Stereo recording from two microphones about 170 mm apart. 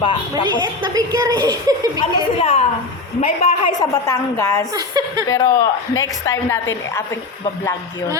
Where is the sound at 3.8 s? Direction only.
20° left (ahead or behind).